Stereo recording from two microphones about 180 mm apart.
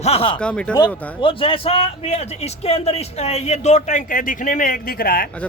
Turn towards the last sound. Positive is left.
turn(degrees=55)  # may be behind; listen again after turning